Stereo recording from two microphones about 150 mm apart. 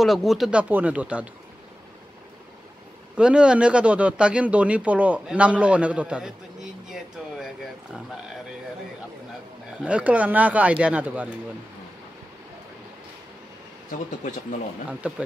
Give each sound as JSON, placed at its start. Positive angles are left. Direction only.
{"t": 0.0, "sound": "speech", "side_deg": 0}
{"t": 3.2, "sound": "speech", "side_deg": -5}
{"t": 9.8, "sound": "speech", "side_deg": -10}
{"t": 13.8, "sound": "speech", "side_deg": 60}
{"t": 14.9, "sound": "speech", "side_deg": -5}